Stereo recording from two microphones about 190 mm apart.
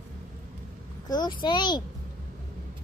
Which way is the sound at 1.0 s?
20° left (ahead or behind).